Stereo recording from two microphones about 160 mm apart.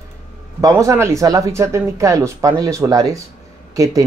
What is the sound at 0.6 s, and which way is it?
Speech, 20° right (ahead or behind).